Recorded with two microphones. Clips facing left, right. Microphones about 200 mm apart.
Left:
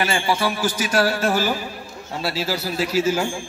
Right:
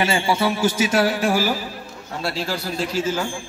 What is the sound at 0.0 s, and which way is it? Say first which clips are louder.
Speech: right 1 dB; 25° right (ahead or behind).